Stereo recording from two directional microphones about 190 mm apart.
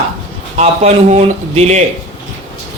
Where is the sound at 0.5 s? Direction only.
35° right (ahead or behind).